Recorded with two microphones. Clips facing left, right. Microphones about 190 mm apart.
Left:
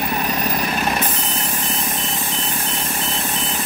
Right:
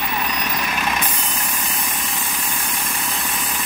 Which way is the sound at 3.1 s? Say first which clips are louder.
Left 3 dB; 25° left (ahead or behind).